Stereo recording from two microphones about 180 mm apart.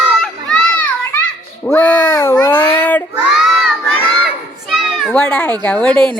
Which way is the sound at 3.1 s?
Centre (ahead or behind).